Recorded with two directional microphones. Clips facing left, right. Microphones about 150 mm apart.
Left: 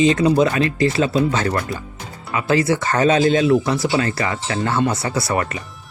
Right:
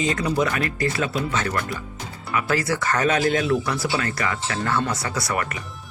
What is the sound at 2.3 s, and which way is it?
Speech, 25° left (ahead or behind).